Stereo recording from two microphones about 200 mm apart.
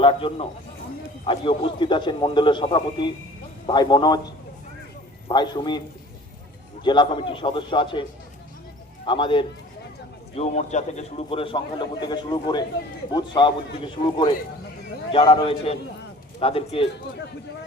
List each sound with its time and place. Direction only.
0.0 s a man's voice: 25° left (ahead or behind)
5.3 s a man's voice: 20° left (ahead or behind)
6.8 s a man's voice: 25° left (ahead or behind)
9.0 s a man's voice: 25° left (ahead or behind)
10.3 s a man's voice: 35° left (ahead or behind)